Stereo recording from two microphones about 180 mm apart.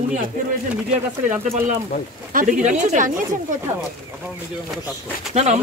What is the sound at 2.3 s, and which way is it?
Speech, 45° right (ahead or behind).